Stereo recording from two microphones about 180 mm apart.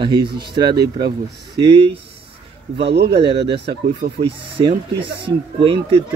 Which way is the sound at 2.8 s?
70° right (ahead or behind).